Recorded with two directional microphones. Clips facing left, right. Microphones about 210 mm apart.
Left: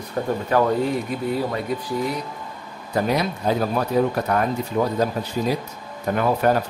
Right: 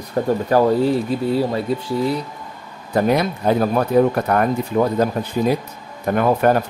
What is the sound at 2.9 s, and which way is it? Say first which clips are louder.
Speech: right 4 dB; 55° right (ahead or behind).